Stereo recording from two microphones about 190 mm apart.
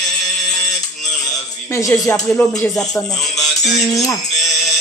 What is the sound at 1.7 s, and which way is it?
Speech, 15° left (ahead or behind).